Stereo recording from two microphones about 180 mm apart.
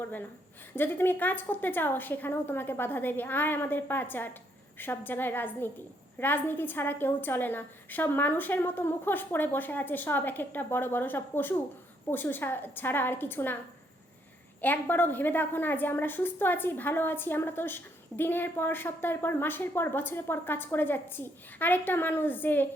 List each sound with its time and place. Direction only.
0.0 s a woman's voice: 10° left (ahead or behind)
14.6 s a woman's voice: 10° left (ahead or behind)